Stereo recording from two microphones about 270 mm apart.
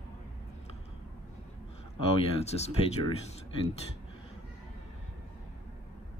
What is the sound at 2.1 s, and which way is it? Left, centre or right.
Speech, left.